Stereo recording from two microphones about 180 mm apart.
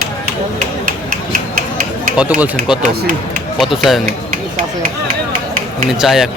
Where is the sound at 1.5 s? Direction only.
50° right (ahead or behind).